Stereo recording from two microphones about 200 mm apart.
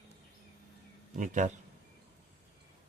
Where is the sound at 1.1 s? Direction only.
40° right (ahead or behind).